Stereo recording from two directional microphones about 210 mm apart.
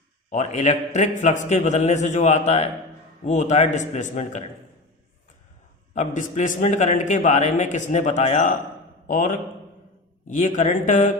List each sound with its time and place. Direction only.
0.3 s a man's voice: 35° left (ahead or behind)
5.9 s a man's voice: 35° left (ahead or behind)